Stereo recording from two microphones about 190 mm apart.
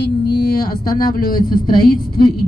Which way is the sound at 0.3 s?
55° left (ahead or behind).